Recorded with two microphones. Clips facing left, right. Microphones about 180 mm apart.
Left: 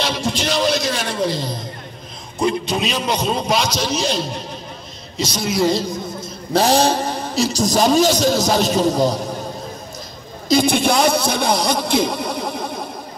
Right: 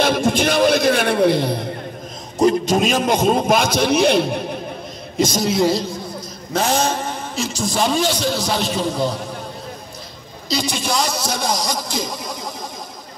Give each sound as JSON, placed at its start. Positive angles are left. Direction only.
{"t": 0.0, "sound": "a man's voice", "side_deg": -50}
{"t": 2.3, "sound": "a man's voice", "side_deg": -45}
{"t": 5.1, "sound": "a man's voice", "side_deg": -50}
{"t": 6.5, "sound": "a man's voice", "side_deg": 35}
{"t": 10.5, "sound": "a man's voice", "side_deg": 55}